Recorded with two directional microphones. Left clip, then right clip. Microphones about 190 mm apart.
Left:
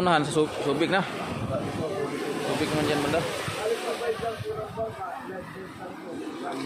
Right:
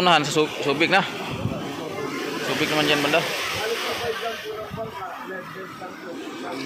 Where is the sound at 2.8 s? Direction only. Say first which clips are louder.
Right 7 dB; 5° right (ahead or behind).